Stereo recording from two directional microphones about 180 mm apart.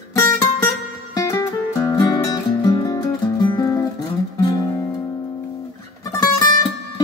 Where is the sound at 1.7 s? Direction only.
20° left (ahead or behind).